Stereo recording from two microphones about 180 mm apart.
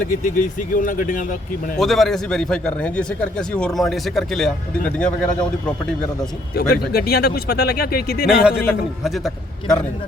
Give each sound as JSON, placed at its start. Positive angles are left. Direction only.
{"t": 0.0, "sound": "speech", "side_deg": 50}
{"t": 1.8, "sound": "a man's voice", "side_deg": 0}
{"t": 6.9, "sound": "speech", "side_deg": 60}
{"t": 8.3, "sound": "a man's voice", "side_deg": -5}